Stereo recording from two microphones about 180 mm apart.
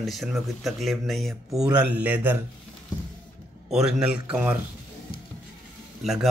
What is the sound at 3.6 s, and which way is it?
Speech, centre (ahead or behind).